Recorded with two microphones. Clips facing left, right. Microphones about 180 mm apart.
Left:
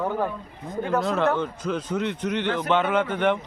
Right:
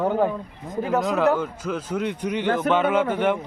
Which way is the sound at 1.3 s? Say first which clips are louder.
Right 2 dB; 10° right (ahead or behind).